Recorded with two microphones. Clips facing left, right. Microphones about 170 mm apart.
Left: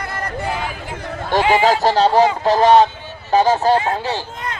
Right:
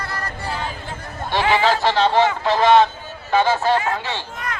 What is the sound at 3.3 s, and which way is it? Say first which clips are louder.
Speech: left 3 dB; 40° left (ahead or behind).